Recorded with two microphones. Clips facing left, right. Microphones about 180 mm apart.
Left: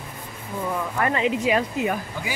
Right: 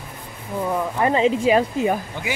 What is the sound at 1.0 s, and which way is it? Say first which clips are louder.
Speech: right 5 dB; 25° right (ahead or behind).